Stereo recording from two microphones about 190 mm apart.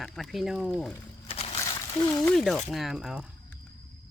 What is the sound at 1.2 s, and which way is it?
Crushing, 35° left (ahead or behind).